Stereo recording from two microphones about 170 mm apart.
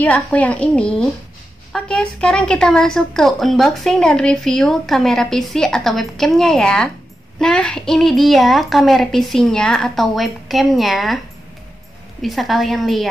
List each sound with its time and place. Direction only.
0.0 s a woman's voice: 10° left (ahead or behind)
12.2 s a woman's voice: centre (ahead or behind)